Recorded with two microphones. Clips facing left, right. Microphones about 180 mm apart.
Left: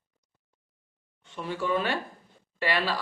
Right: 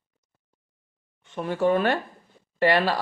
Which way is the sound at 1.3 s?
50° right (ahead or behind).